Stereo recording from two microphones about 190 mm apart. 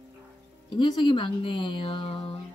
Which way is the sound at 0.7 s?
25° left (ahead or behind).